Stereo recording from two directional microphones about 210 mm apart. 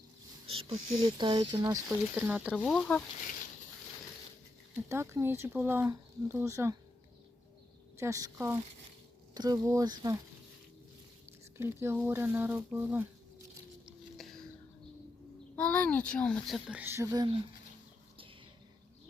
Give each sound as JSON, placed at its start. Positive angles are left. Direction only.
{"t": 0.4, "sound": "speech", "side_deg": -25}
{"t": 2.1, "sound": "a child's voice", "side_deg": -5}
{"t": 4.7, "sound": "speech", "side_deg": -10}
{"t": 7.9, "sound": "speech", "side_deg": -15}
{"t": 11.3, "sound": "speech", "side_deg": -10}
{"t": 13.8, "sound": "a sound", "side_deg": 0}
{"t": 15.5, "sound": "a child's voice", "side_deg": 5}